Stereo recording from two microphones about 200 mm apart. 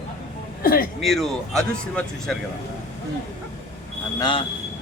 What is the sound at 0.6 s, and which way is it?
Speech, 45° left (ahead or behind).